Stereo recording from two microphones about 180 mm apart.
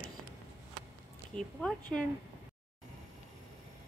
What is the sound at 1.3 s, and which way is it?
Speech, 5° left (ahead or behind).